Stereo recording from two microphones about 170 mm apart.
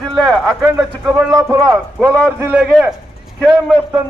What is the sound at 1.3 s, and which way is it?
Speech, 20° right (ahead or behind).